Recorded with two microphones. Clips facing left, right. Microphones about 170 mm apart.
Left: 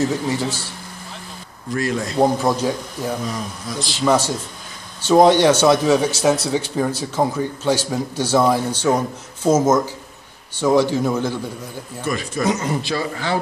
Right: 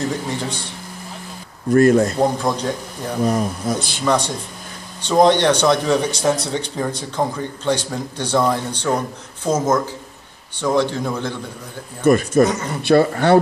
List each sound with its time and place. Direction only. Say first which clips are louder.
0.3 s a man's voice: left 3 dB; 5° left (ahead or behind)
1.8 s speech: right 10 dB; 50° right (ahead or behind)
2.1 s speech: left 2 dB; 5° left (ahead or behind)
3.3 s speech: right 8 dB; 50° right (ahead or behind)
4.0 s a man's voice: left 3 dB; 5° left (ahead or behind)
12.0 s speech: right 9 dB; 50° right (ahead or behind)